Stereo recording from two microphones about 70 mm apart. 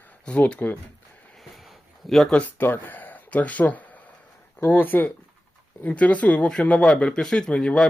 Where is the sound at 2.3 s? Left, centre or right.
Left.